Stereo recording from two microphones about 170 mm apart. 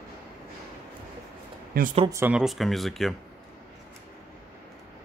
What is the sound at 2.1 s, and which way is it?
Speech, 10° right (ahead or behind).